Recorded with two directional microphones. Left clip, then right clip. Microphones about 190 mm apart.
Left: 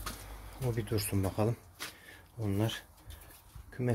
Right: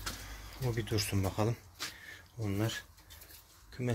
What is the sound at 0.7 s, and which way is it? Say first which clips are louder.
Speech: even; 10° left (ahead or behind).